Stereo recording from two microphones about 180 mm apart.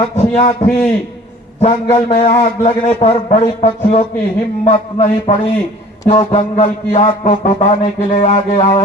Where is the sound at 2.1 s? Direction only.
40° left (ahead or behind).